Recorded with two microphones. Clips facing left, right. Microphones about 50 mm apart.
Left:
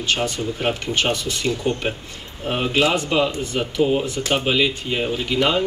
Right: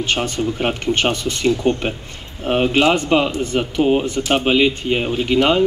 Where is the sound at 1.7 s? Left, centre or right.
Right.